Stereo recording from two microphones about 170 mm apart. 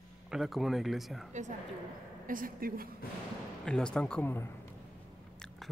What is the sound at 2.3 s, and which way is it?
Speech, 55° right (ahead or behind).